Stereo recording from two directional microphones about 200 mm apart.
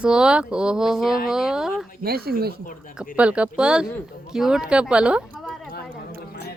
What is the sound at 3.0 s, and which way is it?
Speech, 5° right (ahead or behind).